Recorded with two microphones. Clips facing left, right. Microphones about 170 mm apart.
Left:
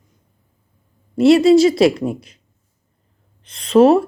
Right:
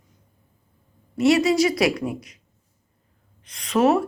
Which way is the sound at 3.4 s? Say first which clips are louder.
Left 8 dB; 30° left (ahead or behind).